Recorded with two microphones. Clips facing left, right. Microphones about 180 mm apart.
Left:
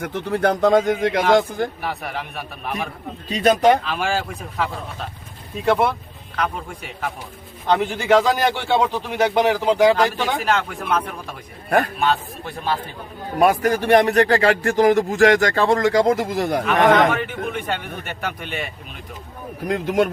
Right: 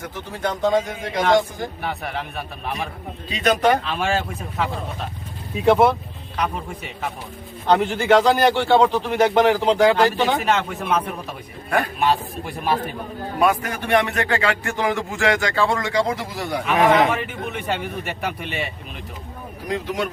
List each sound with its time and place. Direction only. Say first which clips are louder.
0.0 s a man's voice: left 7 dB; 60° left (ahead or behind)
1.8 s a man's voice: even; centre (ahead or behind)
3.2 s speech: left 4 dB; 40° left (ahead or behind)
3.8 s a man's voice: even; centre (ahead or behind)
13.4 s speech: left 4 dB; 40° left (ahead or behind)
16.6 s a man's voice: even; 5° right (ahead or behind)
19.6 s speech: left 6 dB; 50° left (ahead or behind)